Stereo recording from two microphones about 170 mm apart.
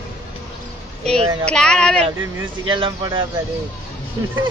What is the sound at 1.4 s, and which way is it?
Speech, 5° left (ahead or behind).